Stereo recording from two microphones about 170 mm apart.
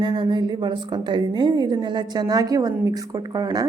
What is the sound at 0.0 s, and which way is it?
A woman's voice, 25° right (ahead or behind).